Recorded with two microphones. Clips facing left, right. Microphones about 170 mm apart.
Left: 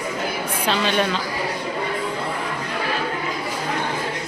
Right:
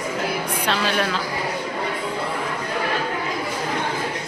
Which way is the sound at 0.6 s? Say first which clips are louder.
Left 3 dB; centre (ahead or behind).